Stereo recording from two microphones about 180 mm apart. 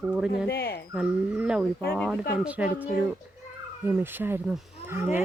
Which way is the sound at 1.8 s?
15° left (ahead or behind).